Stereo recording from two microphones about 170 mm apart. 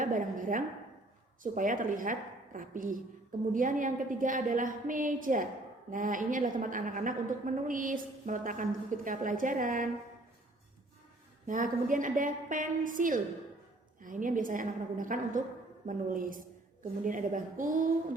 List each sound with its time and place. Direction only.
0.0 s a woman's voice: 50° right (ahead or behind)
11.4 s a woman's voice: 50° right (ahead or behind)